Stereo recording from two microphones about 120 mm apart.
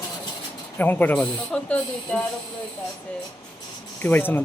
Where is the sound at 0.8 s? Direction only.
15° left (ahead or behind).